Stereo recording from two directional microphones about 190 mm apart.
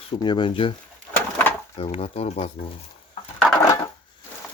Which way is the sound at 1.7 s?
35° left (ahead or behind).